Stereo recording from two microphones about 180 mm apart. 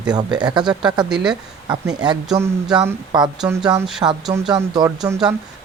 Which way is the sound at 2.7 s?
5° right (ahead or behind).